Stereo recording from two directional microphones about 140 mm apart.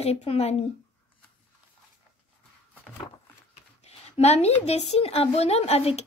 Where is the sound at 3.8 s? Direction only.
50° left (ahead or behind).